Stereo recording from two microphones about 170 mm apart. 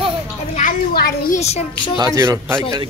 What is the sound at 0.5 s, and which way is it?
Speech, 55° left (ahead or behind).